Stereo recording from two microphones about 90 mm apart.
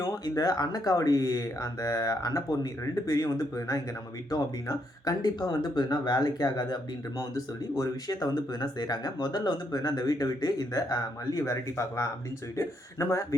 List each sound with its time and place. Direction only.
0.0 s speech: 45° left (ahead or behind)